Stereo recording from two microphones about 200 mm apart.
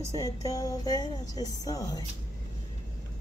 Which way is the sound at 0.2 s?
15° left (ahead or behind).